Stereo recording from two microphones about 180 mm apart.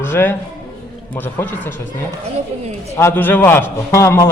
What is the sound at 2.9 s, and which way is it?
A man's voice, 10° left (ahead or behind).